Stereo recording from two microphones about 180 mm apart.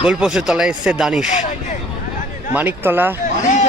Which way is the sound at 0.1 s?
5° right (ahead or behind).